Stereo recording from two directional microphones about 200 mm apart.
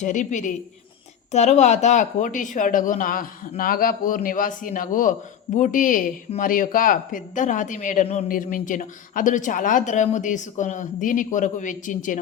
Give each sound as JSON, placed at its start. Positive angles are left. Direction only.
{"t": 0.0, "sound": "a man's voice", "side_deg": 40}